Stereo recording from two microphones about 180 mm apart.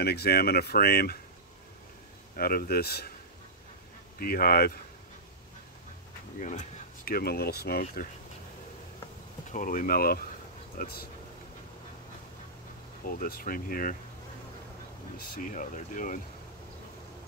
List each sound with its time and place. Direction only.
0.0 s speech: 60° left (ahead or behind)
2.3 s speech: 55° left (ahead or behind)
4.2 s speech: 55° left (ahead or behind)
6.4 s speech: 45° left (ahead or behind); by 7.8 s 60° left (ahead or behind)
9.5 s speech: 50° left (ahead or behind)
13.0 s speech: 55° left (ahead or behind)
15.3 s speech: 45° left (ahead or behind)